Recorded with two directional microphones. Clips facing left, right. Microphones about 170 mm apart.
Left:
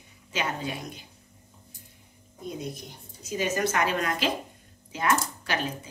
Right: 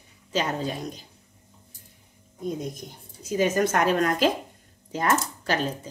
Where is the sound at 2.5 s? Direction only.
45° right (ahead or behind).